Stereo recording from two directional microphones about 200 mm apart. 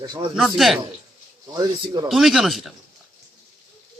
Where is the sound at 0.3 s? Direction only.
Centre (ahead or behind).